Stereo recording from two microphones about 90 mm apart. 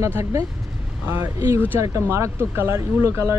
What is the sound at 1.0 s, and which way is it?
Speech, 20° right (ahead or behind).